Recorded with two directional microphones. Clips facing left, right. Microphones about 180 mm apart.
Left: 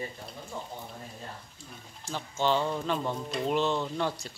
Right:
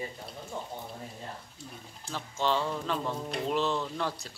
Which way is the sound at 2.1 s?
Centre (ahead or behind).